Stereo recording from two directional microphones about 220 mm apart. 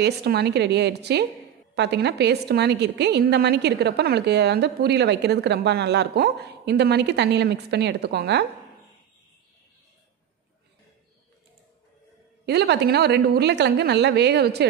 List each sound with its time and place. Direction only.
0.0 s a woman's voice: 50° right (ahead or behind)
12.4 s a woman's voice: 50° right (ahead or behind)